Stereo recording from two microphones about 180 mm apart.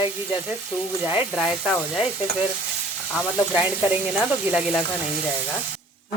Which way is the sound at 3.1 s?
5° right (ahead or behind).